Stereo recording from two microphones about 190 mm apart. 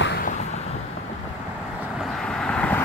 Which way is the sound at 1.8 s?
Centre (ahead or behind).